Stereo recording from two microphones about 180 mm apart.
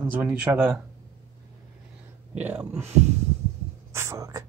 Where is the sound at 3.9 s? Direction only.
15° right (ahead or behind).